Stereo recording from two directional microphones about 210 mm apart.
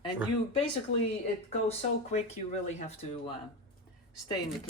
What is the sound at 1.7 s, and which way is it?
Speech, 30° left (ahead or behind).